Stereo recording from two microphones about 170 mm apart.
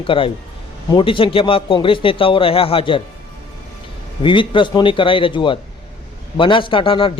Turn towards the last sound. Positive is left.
turn(degrees=30)  # may be behind; listen again after turning